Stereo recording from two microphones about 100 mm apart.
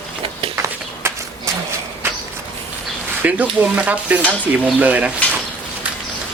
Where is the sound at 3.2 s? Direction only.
15° right (ahead or behind).